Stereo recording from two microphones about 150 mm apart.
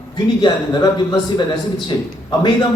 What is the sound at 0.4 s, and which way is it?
Speech, 30° left (ahead or behind).